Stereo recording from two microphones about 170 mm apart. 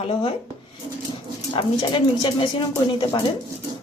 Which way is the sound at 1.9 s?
30° left (ahead or behind).